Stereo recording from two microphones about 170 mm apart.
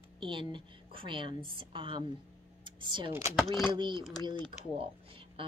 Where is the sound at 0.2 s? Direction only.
30° right (ahead or behind).